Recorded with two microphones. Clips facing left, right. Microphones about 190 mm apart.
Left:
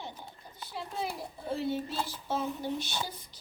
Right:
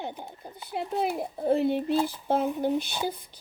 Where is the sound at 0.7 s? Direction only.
60° right (ahead or behind).